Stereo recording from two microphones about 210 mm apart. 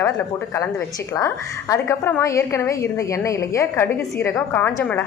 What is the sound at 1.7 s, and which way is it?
A woman's voice, 10° left (ahead or behind).